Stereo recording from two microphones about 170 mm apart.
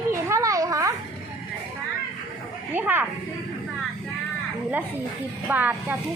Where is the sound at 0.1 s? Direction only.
20° right (ahead or behind).